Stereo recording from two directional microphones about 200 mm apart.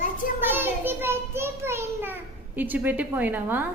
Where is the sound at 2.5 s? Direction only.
10° right (ahead or behind).